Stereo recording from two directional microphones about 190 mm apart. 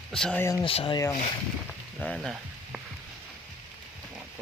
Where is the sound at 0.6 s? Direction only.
30° left (ahead or behind).